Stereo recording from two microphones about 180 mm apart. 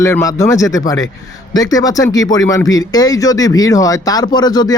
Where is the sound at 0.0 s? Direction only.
20° left (ahead or behind).